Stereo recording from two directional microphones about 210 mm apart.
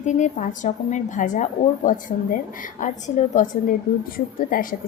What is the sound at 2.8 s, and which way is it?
Speech, 35° left (ahead or behind).